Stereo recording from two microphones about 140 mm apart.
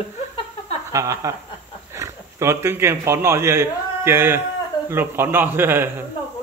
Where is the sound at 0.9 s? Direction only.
25° right (ahead or behind).